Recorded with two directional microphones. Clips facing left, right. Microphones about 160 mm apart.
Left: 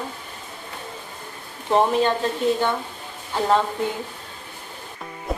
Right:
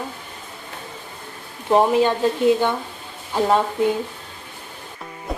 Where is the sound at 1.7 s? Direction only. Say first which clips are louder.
Right 3 dB; 15° right (ahead or behind).